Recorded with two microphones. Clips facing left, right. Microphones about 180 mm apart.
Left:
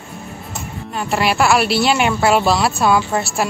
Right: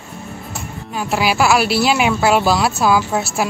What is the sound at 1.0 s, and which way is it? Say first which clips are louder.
Speech: even; centre (ahead or behind).